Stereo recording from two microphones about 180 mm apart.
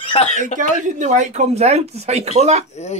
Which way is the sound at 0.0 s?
35° left (ahead or behind).